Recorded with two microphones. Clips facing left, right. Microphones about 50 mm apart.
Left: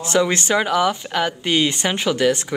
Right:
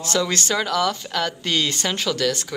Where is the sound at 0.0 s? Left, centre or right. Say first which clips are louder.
Left 4 dB; left.